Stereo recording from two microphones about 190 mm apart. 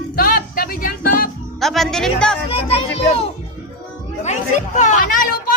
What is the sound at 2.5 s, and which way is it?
A child's voice, 30° left (ahead or behind).